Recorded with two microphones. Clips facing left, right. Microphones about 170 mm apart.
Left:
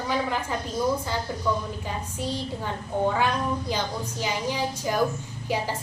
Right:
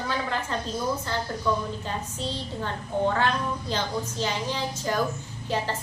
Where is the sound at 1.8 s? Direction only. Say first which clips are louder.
Left 1 dB; 10° left (ahead or behind).